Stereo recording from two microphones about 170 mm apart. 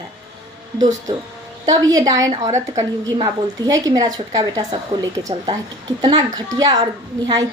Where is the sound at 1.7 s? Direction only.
20° right (ahead or behind).